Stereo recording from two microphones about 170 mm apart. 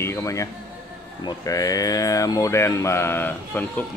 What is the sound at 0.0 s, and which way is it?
Speech, 15° left (ahead or behind).